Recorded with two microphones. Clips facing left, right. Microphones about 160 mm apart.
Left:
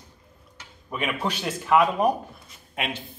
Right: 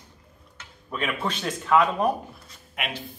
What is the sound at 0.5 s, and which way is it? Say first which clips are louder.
Speech: left 1 dB; 10° left (ahead or behind).